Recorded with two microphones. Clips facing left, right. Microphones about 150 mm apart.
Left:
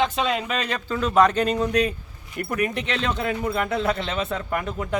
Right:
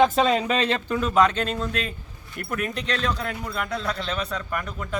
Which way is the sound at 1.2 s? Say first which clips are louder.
Left 3 dB; 10° left (ahead or behind).